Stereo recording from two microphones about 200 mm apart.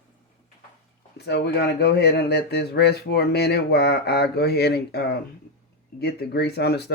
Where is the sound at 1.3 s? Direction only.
55° left (ahead or behind).